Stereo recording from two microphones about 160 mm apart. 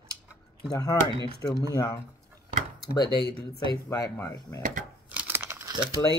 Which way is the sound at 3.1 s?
85° left.